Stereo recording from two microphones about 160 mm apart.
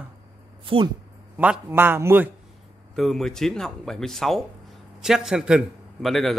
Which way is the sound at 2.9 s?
Centre (ahead or behind).